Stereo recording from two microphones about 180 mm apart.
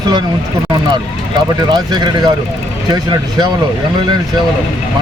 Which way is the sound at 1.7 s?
25° right (ahead or behind).